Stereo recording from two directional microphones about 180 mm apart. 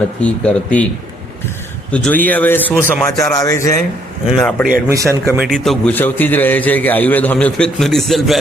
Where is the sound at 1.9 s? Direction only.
10° left (ahead or behind).